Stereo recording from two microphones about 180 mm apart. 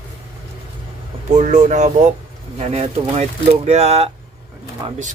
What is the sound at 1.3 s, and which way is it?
Speech, 40° right (ahead or behind).